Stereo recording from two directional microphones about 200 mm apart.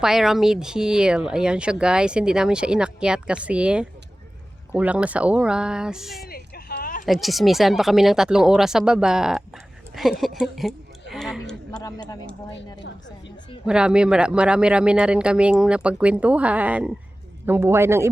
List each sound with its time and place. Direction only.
0.0 s speech: centre (ahead or behind)
6.2 s a sound: 50° left (ahead or behind)
7.0 s speech: centre (ahead or behind)
11.1 s a sound: centre (ahead or behind)
11.8 s speech: 20° left (ahead or behind)
13.7 s a man's voice: 5° right (ahead or behind)